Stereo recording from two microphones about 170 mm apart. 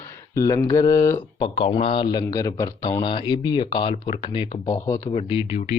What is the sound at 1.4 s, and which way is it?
Speech, 30° left (ahead or behind).